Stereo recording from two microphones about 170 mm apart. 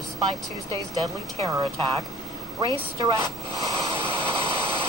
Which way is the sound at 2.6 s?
30° right (ahead or behind).